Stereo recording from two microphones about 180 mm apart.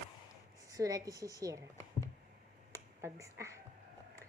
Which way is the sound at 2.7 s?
15° right (ahead or behind).